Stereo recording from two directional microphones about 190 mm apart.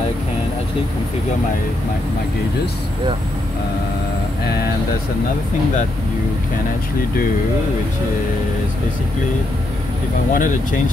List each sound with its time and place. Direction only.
10.3 s speech: 45° left (ahead or behind)